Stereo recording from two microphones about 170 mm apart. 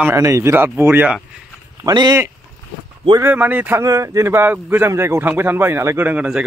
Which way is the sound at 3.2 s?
10° right (ahead or behind).